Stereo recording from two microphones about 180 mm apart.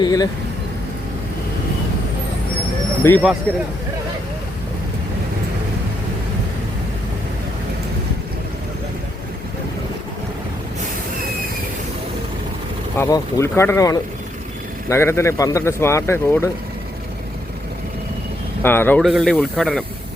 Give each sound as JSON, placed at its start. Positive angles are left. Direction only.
{"t": 0.0, "sound": "vehicle", "side_deg": 20}
{"t": 3.0, "sound": "speech", "side_deg": 15}
{"t": 13.0, "sound": "speech", "side_deg": 20}
{"t": 18.6, "sound": "speech", "side_deg": 10}